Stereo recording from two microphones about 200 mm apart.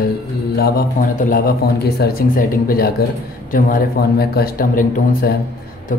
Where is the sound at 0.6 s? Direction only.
45° left (ahead or behind).